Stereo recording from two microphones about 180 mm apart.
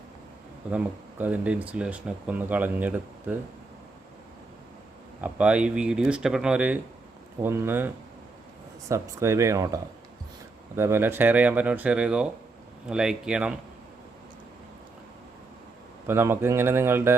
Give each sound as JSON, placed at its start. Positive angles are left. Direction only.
{"t": 1.2, "sound": "speech", "side_deg": -10}
{"t": 5.2, "sound": "speech", "side_deg": -5}
{"t": 16.0, "sound": "speech", "side_deg": -15}